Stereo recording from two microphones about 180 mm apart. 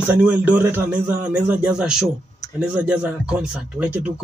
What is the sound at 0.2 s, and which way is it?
A man's voice, 10° right (ahead or behind).